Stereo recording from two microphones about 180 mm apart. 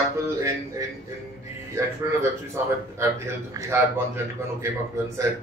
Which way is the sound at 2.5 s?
15° right (ahead or behind).